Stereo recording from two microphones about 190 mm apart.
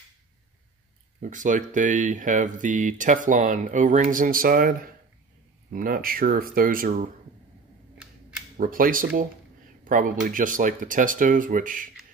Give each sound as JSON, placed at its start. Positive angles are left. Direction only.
{"t": 1.2, "sound": "speech", "side_deg": -40}
{"t": 8.5, "sound": "speech", "side_deg": -45}